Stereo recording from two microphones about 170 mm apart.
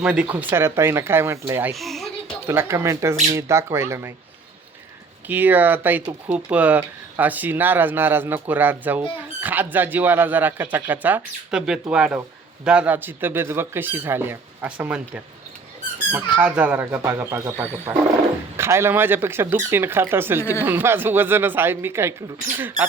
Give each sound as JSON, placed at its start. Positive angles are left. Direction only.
{"t": 0.0, "sound": "speech", "side_deg": -5}
{"t": 1.7, "sound": "speech", "side_deg": 0}
{"t": 2.5, "sound": "speech", "side_deg": -15}
{"t": 5.3, "sound": "speech", "side_deg": -10}